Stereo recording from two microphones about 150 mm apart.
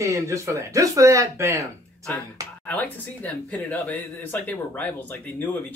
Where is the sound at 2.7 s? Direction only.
10° left (ahead or behind).